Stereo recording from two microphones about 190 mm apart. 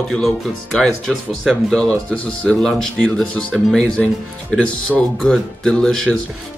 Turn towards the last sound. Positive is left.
turn(degrees=5)  # may be behind; listen again after turning